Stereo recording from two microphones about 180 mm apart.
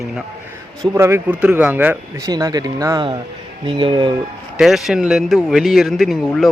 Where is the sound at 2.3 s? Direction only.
20° right (ahead or behind).